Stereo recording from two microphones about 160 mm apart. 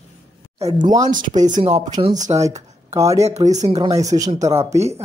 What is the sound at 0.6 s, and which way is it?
Speech, 25° right (ahead or behind).